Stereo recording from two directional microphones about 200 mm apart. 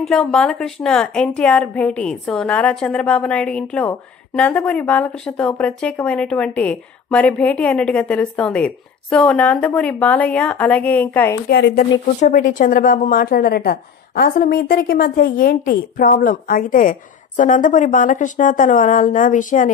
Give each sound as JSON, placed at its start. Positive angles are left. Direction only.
{"t": 0.0, "sound": "a woman's voice", "side_deg": 5}
{"t": 11.4, "sound": "speech", "side_deg": 50}
{"t": 12.2, "sound": "speech", "side_deg": 40}